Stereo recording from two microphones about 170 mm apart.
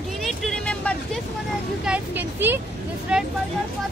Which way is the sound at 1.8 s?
10° right (ahead or behind).